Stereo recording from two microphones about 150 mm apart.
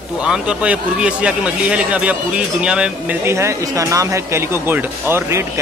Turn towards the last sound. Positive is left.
turn(degrees=-20)  # may be behind; listen again after turning